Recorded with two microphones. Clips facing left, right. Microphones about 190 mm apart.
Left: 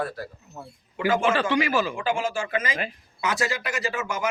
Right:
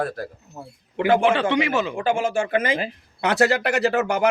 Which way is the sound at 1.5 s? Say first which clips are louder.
Right 2 dB; 20° right (ahead or behind).